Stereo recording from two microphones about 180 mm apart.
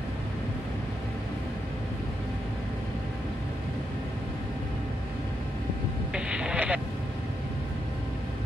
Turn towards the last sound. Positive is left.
turn(degrees=-5)  # may be behind; listen again after turning